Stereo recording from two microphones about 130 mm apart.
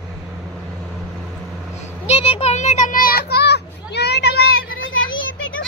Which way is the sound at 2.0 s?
50° left (ahead or behind).